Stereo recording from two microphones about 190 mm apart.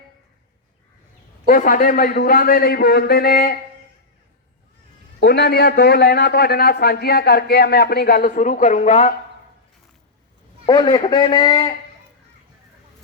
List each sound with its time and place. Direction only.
1.5 s a man's voice: 45° left (ahead or behind)
5.2 s a man's voice: 60° left (ahead or behind); by 9.1 s 40° left (ahead or behind)
10.7 s a man's voice: 20° left (ahead or behind)